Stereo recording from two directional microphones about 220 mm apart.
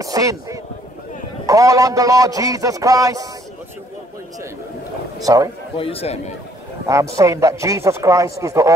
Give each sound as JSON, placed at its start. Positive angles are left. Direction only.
{"t": 0.0, "sound": "a man's voice", "side_deg": -15}
{"t": 5.2, "sound": "a man's voice", "side_deg": -15}
{"t": 5.8, "sound": "speech", "side_deg": 25}
{"t": 7.2, "sound": "a man's voice", "side_deg": -15}